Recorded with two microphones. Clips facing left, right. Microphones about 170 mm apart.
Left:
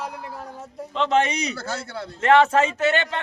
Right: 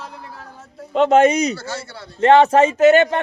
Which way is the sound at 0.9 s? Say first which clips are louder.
Right 8 dB; 45° right (ahead or behind).